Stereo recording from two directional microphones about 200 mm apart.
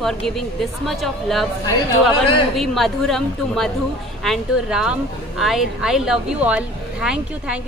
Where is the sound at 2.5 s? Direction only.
Centre (ahead or behind).